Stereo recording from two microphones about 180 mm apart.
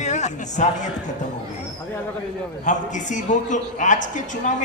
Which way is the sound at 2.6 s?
45° left (ahead or behind).